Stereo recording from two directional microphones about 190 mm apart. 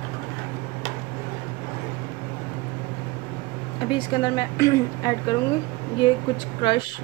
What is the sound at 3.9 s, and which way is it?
A woman's voice, 25° left (ahead or behind).